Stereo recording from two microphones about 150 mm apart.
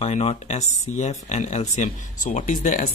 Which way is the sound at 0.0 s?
45° left (ahead or behind).